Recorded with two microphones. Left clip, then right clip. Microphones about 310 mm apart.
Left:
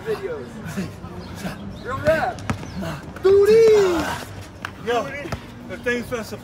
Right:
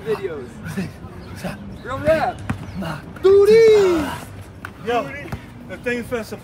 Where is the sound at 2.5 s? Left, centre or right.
Left.